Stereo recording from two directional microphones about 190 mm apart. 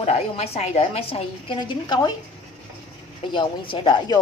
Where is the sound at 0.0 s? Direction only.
30° left (ahead or behind).